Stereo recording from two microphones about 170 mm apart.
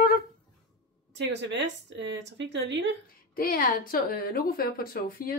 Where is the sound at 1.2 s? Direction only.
90° right.